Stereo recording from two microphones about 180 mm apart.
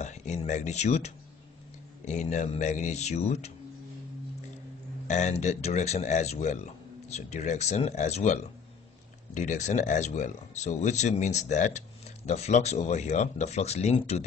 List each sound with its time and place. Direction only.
0.0 s a sound: 40° left (ahead or behind)
2.0 s speech: 40° left (ahead or behind)
5.0 s speech: 40° left (ahead or behind)